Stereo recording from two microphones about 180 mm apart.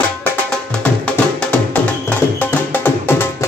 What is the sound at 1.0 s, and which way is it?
Music, 5° left (ahead or behind).